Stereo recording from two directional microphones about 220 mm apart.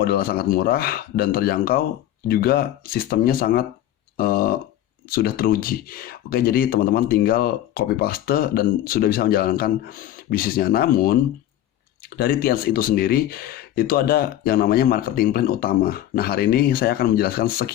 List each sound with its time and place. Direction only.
0.0 s speech: 45° left (ahead or behind)